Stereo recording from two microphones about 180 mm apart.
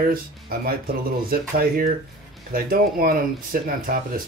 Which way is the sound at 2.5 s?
55° right (ahead or behind).